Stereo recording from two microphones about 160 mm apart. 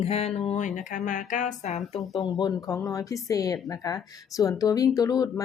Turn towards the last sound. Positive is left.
turn(degrees=25)  # may be behind; listen again after turning